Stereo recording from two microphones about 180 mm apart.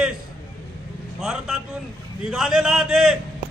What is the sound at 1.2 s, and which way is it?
A man's voice, centre (ahead or behind).